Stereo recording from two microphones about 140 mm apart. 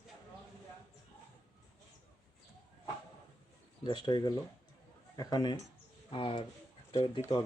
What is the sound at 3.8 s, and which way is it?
A man's voice, 35° left (ahead or behind).